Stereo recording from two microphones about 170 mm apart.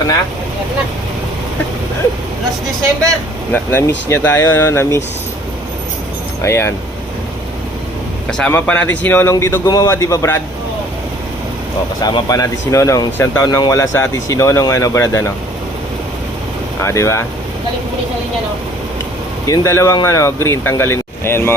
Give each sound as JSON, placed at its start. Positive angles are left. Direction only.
{"t": 3.5, "sound": "speech", "side_deg": 10}
{"t": 6.4, "sound": "speech", "side_deg": 15}
{"t": 8.3, "sound": "speech", "side_deg": 10}
{"t": 11.9, "sound": "speech", "side_deg": 25}
{"t": 16.8, "sound": "speech", "side_deg": 15}
{"t": 19.5, "sound": "speech", "side_deg": 15}